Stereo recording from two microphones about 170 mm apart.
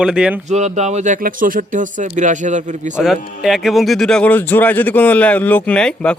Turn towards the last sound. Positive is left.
turn(degrees=5)  # may be behind; listen again after turning